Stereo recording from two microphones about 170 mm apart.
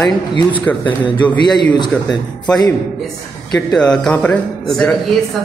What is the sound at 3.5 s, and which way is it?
A man's voice, centre (ahead or behind).